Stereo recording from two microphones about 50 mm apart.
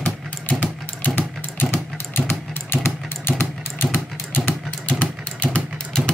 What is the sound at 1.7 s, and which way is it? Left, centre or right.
Vehicle, left.